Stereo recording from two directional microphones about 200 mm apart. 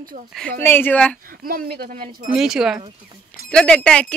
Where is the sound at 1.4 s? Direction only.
50° right (ahead or behind).